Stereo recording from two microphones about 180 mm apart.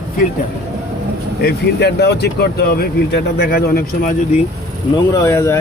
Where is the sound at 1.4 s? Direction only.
65° left (ahead or behind).